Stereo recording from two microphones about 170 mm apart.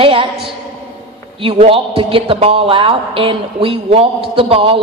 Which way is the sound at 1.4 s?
35° right (ahead or behind).